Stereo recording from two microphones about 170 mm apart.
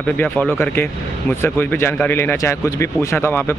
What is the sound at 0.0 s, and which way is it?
Speech, 10° left (ahead or behind).